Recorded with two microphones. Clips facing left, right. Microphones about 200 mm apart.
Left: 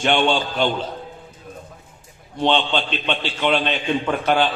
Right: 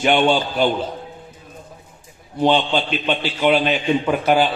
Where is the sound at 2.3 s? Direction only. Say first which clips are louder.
Right 3 dB; 10° right (ahead or behind).